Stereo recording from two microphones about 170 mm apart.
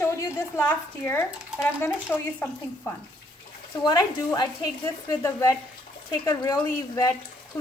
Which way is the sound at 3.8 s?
25° left (ahead or behind).